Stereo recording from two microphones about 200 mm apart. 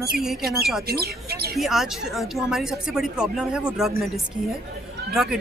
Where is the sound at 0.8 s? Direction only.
50° right (ahead or behind).